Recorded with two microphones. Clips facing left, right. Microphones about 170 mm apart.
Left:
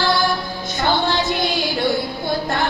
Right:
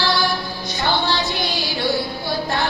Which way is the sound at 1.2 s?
50° left (ahead or behind).